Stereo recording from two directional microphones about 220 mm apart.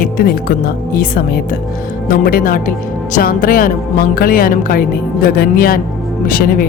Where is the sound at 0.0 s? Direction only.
40° left (ahead or behind).